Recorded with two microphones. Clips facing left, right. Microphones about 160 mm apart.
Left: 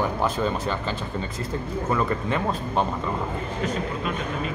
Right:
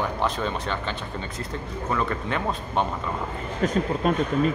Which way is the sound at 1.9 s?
Centre (ahead or behind).